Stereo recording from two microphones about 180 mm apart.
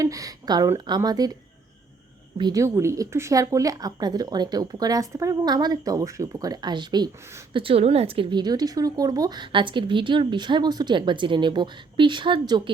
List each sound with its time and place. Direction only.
0.0 s a woman's voice: 20° right (ahead or behind)
2.4 s a woman's voice: 20° right (ahead or behind)